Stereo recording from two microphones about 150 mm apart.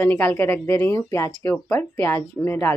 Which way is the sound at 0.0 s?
10° left (ahead or behind).